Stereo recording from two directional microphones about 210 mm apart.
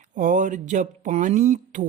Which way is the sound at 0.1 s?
40° right (ahead or behind).